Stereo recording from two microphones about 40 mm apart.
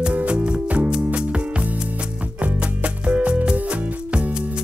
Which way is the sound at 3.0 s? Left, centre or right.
Right.